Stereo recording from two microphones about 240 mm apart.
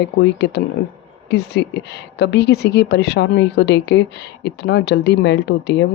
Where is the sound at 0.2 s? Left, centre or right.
Left.